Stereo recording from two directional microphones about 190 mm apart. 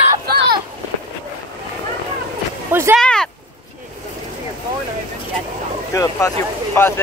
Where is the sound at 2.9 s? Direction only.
5° left (ahead or behind).